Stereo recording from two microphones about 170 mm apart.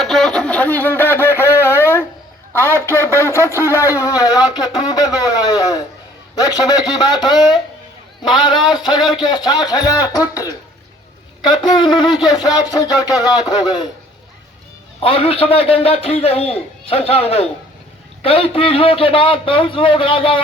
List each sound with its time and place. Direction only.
0.0 s a sound: centre (ahead or behind)
2.5 s a man's voice: 10° left (ahead or behind)
15.0 s a man's voice: 35° left (ahead or behind)